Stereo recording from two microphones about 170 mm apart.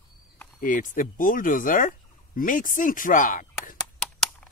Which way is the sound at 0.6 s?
50° left (ahead or behind).